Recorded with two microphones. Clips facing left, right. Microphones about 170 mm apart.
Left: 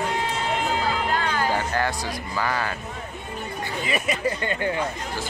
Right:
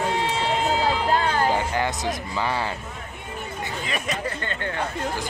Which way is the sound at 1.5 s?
20° right (ahead or behind).